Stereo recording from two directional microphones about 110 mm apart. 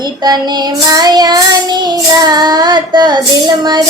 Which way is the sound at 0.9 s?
40° right (ahead or behind).